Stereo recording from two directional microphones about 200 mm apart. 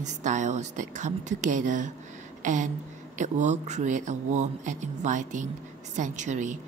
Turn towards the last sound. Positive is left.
turn(degrees=-40)  # may be behind; listen again after turning